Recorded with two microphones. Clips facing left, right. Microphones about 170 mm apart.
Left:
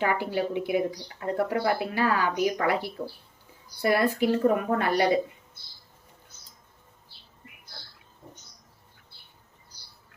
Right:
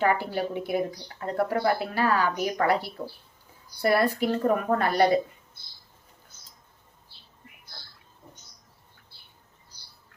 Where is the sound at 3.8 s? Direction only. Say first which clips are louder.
Even; 40° right (ahead or behind).